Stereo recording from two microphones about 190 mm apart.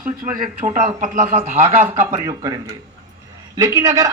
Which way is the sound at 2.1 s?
20° right (ahead or behind).